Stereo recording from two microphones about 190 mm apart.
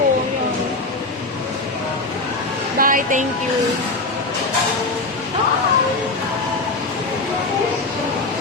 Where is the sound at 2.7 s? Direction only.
45° right (ahead or behind).